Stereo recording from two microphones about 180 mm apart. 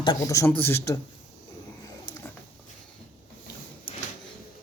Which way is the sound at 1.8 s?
15° left (ahead or behind).